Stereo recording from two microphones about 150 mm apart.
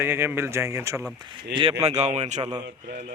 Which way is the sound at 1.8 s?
45° right (ahead or behind).